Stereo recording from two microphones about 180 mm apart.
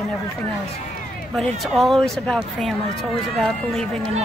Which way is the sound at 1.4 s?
Centre (ahead or behind).